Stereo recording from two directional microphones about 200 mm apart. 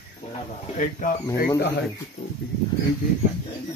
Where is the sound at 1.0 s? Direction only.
40° left (ahead or behind).